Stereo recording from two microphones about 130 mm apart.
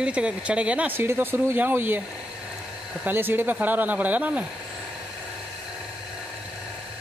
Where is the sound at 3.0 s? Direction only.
15° right (ahead or behind).